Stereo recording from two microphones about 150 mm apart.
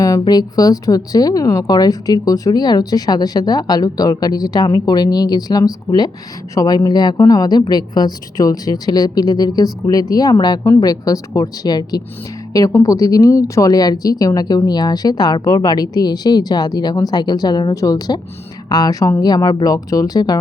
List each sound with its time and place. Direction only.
0.0 s speech: 25° left (ahead or behind)